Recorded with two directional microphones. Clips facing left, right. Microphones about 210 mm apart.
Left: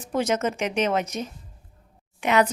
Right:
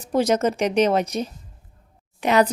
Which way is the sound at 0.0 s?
35° right (ahead or behind).